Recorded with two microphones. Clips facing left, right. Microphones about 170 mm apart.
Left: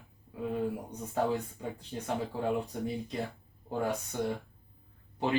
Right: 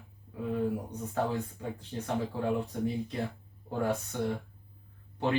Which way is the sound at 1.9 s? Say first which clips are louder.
Right 3 dB; 15° left (ahead or behind).